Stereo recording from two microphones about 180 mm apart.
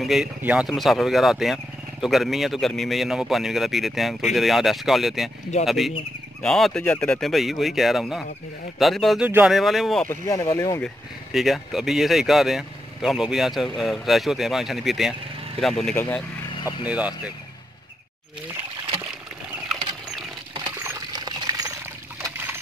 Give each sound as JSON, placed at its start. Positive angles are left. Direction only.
{"t": 0.0, "sound": "speech", "side_deg": 0}
{"t": 10.0, "sound": "speech", "side_deg": 20}
{"t": 11.3, "sound": "speech", "side_deg": 0}
{"t": 16.5, "sound": "a sound", "side_deg": 25}
{"t": 16.8, "sound": "speech", "side_deg": -5}
{"t": 20.5, "sound": "rodents", "side_deg": -20}